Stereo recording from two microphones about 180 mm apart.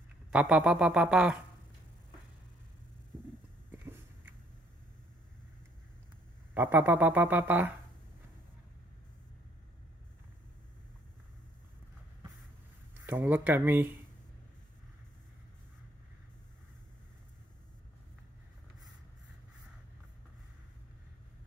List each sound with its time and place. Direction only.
0.3 s speech: 5° right (ahead or behind)
3.7 s a sound: 10° right (ahead or behind)
6.5 s speech: 10° right (ahead or behind)
13.0 s speech: 10° right (ahead or behind)